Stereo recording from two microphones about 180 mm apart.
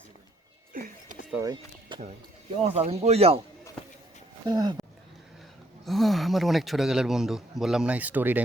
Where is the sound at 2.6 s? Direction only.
35° right (ahead or behind).